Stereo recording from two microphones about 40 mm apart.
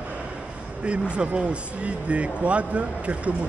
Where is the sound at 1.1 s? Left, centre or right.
Right.